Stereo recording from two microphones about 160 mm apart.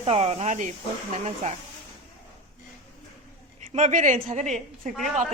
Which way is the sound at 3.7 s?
50° right (ahead or behind).